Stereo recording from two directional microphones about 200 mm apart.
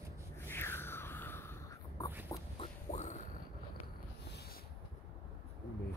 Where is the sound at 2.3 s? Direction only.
30° left (ahead or behind).